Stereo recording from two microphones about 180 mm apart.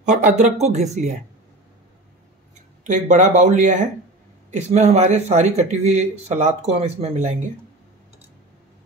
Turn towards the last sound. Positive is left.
turn(degrees=-35)  # may be behind; listen again after turning